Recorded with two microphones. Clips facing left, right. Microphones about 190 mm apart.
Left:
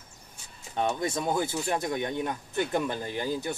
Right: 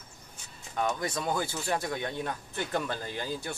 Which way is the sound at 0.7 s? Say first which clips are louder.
Left 2 dB; 25° left (ahead or behind).